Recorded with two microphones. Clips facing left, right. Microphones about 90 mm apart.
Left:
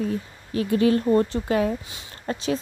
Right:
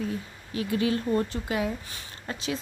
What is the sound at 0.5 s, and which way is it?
A woman's voice, 40° left (ahead or behind).